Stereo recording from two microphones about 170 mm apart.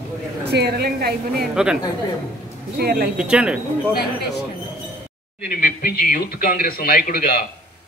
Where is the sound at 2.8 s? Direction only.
65° right (ahead or behind).